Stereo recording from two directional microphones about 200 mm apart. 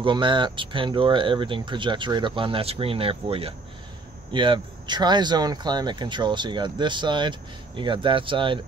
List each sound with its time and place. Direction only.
0.0 s speech: 25° right (ahead or behind)